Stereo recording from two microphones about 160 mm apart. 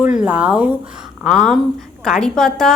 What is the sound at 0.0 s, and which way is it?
A woman's voice, 10° right (ahead or behind).